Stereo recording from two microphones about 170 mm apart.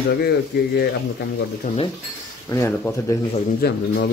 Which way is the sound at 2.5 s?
15° left (ahead or behind).